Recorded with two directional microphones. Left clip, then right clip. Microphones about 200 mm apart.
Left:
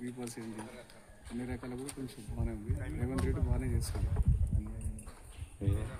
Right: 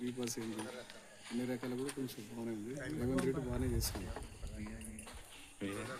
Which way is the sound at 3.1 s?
15° left (ahead or behind).